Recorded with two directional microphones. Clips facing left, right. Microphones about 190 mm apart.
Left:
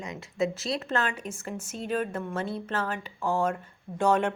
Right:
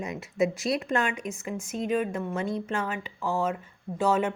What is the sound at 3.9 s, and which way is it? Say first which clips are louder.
Speech: left 1 dB; 5° right (ahead or behind).